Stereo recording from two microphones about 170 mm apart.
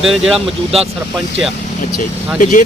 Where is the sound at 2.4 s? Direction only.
50° left (ahead or behind).